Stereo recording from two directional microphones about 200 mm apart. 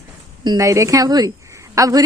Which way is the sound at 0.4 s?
15° right (ahead or behind).